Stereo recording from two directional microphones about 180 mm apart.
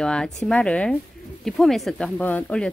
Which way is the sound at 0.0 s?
5° left (ahead or behind).